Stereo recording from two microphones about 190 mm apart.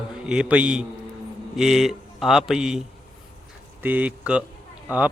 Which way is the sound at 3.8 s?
10° right (ahead or behind).